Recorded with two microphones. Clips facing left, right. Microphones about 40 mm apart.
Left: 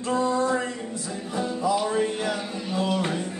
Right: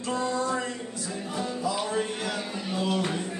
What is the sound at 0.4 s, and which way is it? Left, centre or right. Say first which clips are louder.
Music: left 4 dB; left.